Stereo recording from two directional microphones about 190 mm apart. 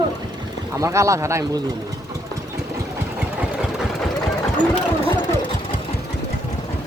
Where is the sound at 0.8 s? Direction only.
15° right (ahead or behind).